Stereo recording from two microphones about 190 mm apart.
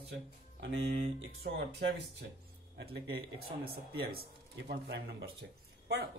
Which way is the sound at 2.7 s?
60° right (ahead or behind).